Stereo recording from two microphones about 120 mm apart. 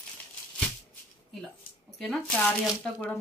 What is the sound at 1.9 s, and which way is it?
A woman's voice, centre (ahead or behind).